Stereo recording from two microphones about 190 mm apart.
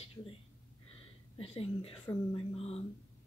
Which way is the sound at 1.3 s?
30° left (ahead or behind).